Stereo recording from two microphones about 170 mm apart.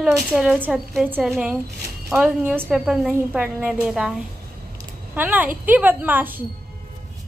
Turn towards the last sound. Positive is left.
turn(degrees=-10)  # may be behind; listen again after turning